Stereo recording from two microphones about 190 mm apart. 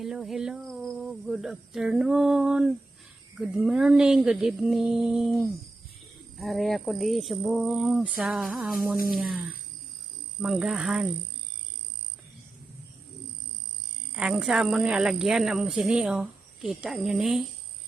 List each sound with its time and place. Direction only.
0.0 s a woman's voice: centre (ahead or behind)
14.2 s a woman's voice: 5° right (ahead or behind)